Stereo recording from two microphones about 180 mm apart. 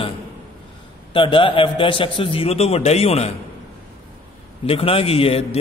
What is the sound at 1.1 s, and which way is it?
A man's voice, 30° left (ahead or behind).